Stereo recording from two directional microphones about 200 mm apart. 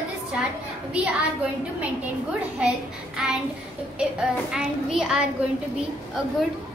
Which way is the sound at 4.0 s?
5° right (ahead or behind).